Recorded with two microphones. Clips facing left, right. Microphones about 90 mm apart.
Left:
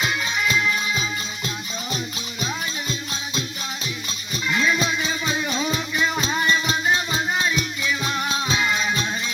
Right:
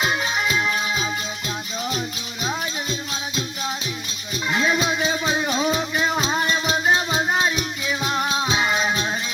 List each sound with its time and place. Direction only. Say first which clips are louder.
0.2 s music: right 1 dB; 25° right (ahead or behind)
4.4 s music: right 1 dB; 30° right (ahead or behind)
6.5 s music: even; 20° right (ahead or behind)